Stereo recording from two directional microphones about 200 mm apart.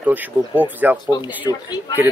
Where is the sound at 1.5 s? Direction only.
20° left (ahead or behind).